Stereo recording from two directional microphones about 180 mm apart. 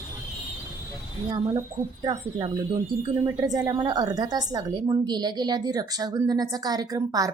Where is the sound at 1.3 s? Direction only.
15° right (ahead or behind).